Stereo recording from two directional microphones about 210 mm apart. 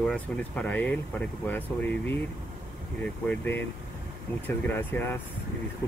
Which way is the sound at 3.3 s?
10° left (ahead or behind).